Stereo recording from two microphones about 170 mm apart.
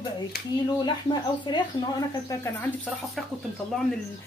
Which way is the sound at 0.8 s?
25° left (ahead or behind).